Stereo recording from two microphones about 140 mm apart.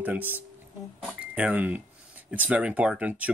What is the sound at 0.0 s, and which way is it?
Speech, 15° right (ahead or behind).